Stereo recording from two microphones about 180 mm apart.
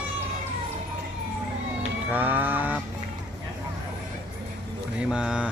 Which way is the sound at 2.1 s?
10° right (ahead or behind).